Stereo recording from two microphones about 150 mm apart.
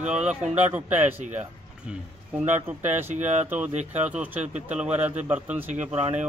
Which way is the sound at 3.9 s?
10° right (ahead or behind).